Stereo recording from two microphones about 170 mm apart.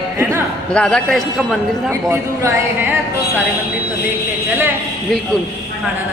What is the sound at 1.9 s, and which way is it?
Speech, 15° right (ahead or behind).